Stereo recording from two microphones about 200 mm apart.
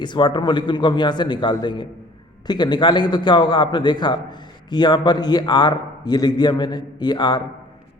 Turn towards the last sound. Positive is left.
turn(degrees=20)  # may be behind; listen again after turning